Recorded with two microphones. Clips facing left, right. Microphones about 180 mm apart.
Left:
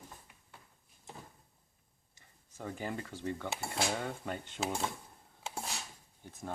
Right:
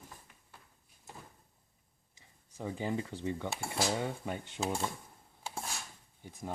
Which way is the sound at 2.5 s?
15° right (ahead or behind).